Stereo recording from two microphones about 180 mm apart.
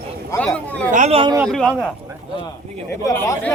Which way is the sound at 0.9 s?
35° right (ahead or behind).